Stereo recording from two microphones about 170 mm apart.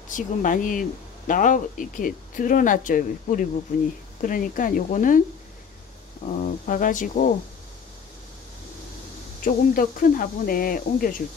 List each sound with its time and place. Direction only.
0.1 s speech: 50° left (ahead or behind)
6.4 s speech: 50° left (ahead or behind)
9.4 s speech: 55° left (ahead or behind)